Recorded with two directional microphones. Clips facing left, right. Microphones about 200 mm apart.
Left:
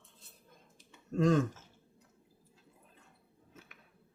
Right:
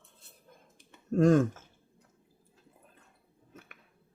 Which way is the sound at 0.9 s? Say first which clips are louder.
Right 5 dB; 50° right (ahead or behind).